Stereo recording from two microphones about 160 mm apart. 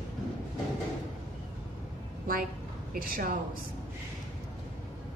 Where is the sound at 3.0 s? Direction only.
65° right (ahead or behind).